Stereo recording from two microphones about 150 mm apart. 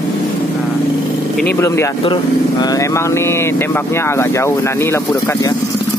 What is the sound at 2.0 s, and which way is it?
Speech, 30° left (ahead or behind).